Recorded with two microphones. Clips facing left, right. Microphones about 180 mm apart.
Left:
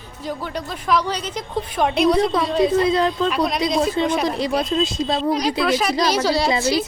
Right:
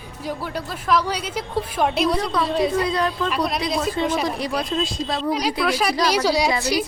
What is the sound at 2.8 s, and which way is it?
Speech, 25° left (ahead or behind).